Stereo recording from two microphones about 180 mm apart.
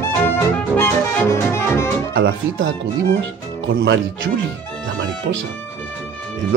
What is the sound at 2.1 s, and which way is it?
Music, 90° right.